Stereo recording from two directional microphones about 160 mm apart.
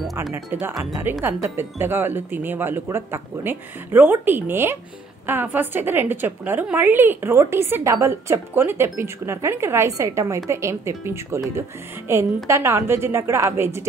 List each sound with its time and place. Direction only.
0.3 s a woman's voice: 15° right (ahead or behind)